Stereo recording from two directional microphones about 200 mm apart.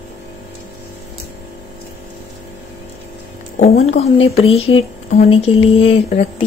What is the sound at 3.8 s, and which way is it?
A woman's voice, 30° left (ahead or behind).